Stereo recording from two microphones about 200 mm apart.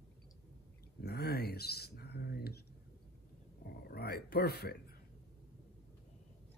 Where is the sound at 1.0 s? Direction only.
50° left (ahead or behind).